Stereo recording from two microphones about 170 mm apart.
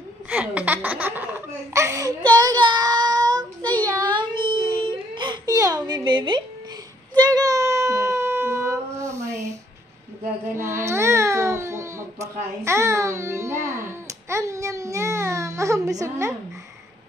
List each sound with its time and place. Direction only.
0.3 s laughter: 10° right (ahead or behind)
3.8 s baby cry: 25° right (ahead or behind)
7.2 s child singing: 20° right (ahead or behind)
10.5 s baby cry: 15° right (ahead or behind)